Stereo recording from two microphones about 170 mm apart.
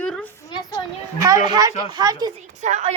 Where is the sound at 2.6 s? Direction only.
45° right (ahead or behind).